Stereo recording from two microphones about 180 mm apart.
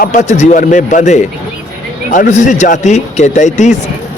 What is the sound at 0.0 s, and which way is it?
Speech, 40° left (ahead or behind).